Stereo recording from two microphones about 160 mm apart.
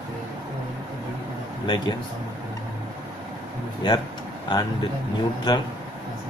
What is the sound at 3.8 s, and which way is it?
Speech, 25° left (ahead or behind).